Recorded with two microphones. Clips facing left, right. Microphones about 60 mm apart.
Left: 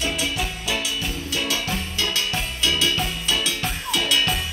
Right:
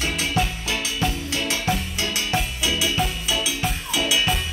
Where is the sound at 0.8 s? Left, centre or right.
Right.